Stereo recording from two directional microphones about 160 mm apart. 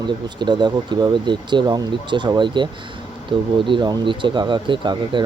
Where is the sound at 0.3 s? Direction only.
30° right (ahead or behind).